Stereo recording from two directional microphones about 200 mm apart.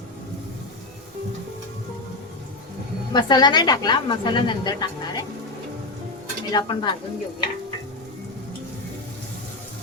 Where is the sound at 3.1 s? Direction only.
20° left (ahead or behind).